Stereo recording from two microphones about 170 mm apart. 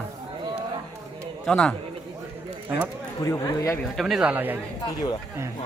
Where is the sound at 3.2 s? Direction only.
20° left (ahead or behind).